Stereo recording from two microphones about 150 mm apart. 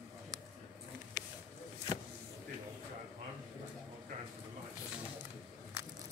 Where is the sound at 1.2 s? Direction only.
15° right (ahead or behind).